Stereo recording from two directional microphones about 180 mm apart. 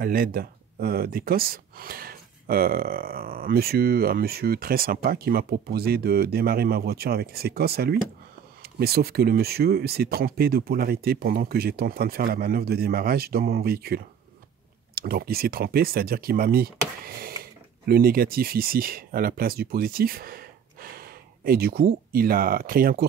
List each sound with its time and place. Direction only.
0.0 s speech: 55° right (ahead or behind)